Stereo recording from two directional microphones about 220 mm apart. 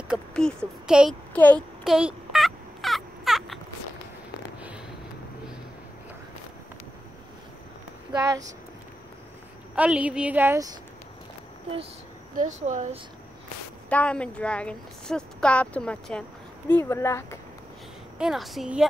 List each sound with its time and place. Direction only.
0.1 s speech: 5° left (ahead or behind)
2.0 s a sound: 5° right (ahead or behind)
8.1 s speech: 15° right (ahead or behind)
9.8 s a woman's voice: 5° right (ahead or behind)
12.4 s speech: 35° right (ahead or behind)
13.8 s speech: 5° left (ahead or behind)
18.1 s speech: centre (ahead or behind)